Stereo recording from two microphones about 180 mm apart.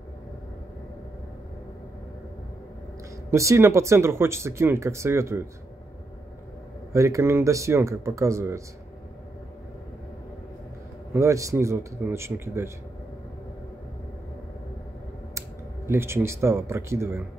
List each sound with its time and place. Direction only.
3.3 s speech: 15° right (ahead or behind)
6.9 s speech: 15° right (ahead or behind)
11.1 s speech: 15° right (ahead or behind)
15.9 s speech: 15° right (ahead or behind)